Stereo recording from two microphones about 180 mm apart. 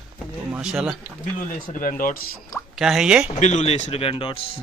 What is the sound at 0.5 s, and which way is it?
Speech, 5° right (ahead or behind).